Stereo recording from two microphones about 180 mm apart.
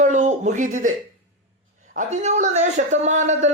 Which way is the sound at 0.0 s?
40° right (ahead or behind).